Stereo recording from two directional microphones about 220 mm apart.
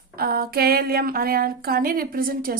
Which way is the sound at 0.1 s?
45° right (ahead or behind).